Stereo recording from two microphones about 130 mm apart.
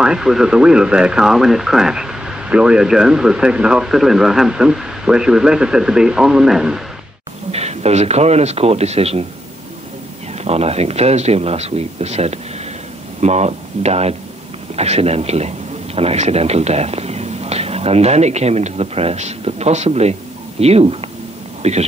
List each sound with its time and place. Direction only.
0.0 s speech: 5° right (ahead or behind)
7.5 s a man's voice: 55° right (ahead or behind)
10.3 s a man's voice: 55° right (ahead or behind)
21.6 s speech: 60° right (ahead or behind)